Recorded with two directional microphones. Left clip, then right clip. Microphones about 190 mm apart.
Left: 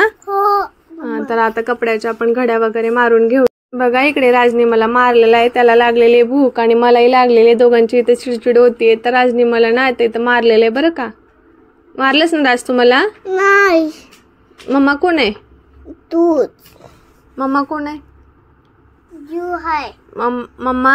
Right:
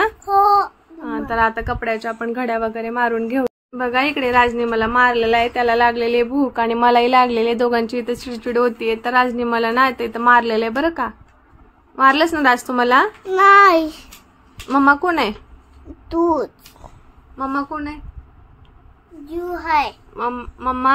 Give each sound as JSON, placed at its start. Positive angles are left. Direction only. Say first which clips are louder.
{"t": 0.3, "sound": "child singing", "louder": "right 5 dB", "side_deg": 10}
{"t": 1.0, "sound": "speech", "louder": "left 3 dB", "side_deg": 25}
{"t": 3.7, "sound": "speech", "louder": "left 2 dB", "side_deg": 20}
{"t": 13.4, "sound": "a child's voice", "louder": "even", "side_deg": 5}
{"t": 17.4, "sound": "speech", "louder": "left 6 dB", "side_deg": 35}
{"t": 19.2, "sound": "a child's voice", "louder": "left 4 dB", "side_deg": 0}
{"t": 20.2, "sound": "speech", "louder": "left 6 dB", "side_deg": 30}